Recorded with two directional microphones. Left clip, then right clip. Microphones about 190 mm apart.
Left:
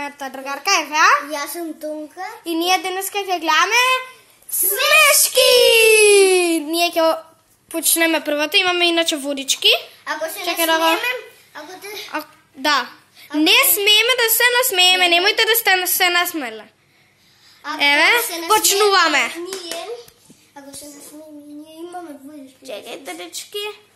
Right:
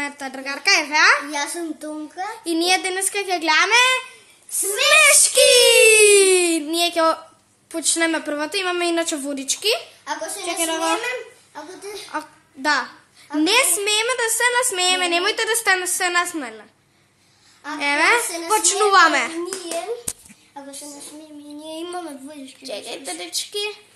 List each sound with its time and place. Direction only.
0.0 s a child's voice: centre (ahead or behind)
4.6 s a child's voice: 10° left (ahead or behind)
17.6 s a woman's voice: 15° left (ahead or behind)
18.9 s a child's voice: centre (ahead or behind)
22.7 s a child's voice: 5° left (ahead or behind)